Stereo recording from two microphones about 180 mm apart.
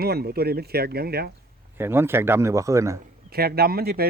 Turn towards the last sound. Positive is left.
turn(degrees=-60)  # may be behind; listen again after turning